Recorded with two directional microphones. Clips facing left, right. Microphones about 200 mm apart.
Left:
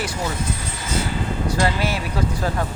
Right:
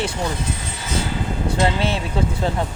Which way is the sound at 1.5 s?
25° right (ahead or behind).